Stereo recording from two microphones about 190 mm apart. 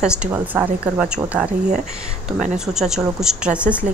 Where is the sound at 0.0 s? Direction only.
10° right (ahead or behind).